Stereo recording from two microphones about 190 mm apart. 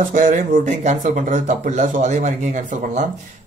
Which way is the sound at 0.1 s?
45° right (ahead or behind).